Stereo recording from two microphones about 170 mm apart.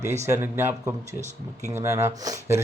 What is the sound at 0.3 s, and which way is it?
Speech, 15° right (ahead or behind).